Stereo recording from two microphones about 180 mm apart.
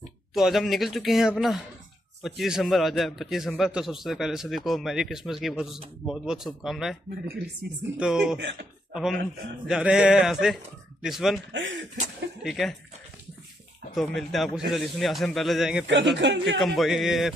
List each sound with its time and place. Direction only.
0.3 s a man's voice: centre (ahead or behind)
8.0 s a man's voice: 5° right (ahead or behind)
8.4 s speech: 75° right (ahead or behind)
9.7 s a man's voice: 5° right (ahead or behind)
11.5 s speech: 90° right
12.4 s a man's voice: centre (ahead or behind)
13.9 s a man's voice: centre (ahead or behind)
15.9 s speech: 75° right (ahead or behind)
16.5 s a man's voice: centre (ahead or behind)